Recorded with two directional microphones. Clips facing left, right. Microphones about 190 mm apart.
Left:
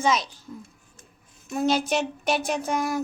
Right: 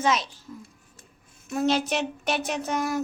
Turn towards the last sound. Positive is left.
turn(degrees=0)  # may be behind; listen again after turning